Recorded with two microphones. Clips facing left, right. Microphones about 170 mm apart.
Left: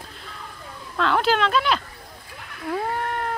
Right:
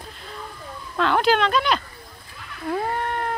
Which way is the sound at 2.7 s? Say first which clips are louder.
Right 1 dB; centre (ahead or behind).